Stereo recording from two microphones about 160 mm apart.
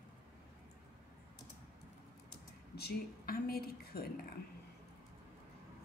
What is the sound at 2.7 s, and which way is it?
A woman's voice, 75° left (ahead or behind).